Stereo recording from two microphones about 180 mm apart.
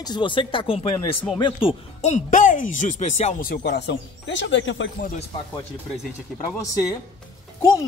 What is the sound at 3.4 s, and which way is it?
Speech, 60° left (ahead or behind).